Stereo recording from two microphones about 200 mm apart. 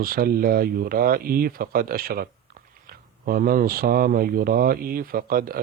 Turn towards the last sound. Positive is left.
turn(degrees=-45)  # may be behind; listen again after turning